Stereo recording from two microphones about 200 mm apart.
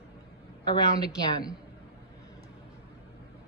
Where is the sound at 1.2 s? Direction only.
20° left (ahead or behind).